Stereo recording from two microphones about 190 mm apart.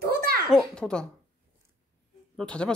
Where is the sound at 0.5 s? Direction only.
5° left (ahead or behind).